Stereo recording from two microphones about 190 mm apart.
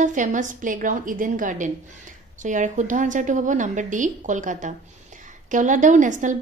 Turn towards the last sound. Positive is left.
turn(degrees=-40)  # may be behind; listen again after turning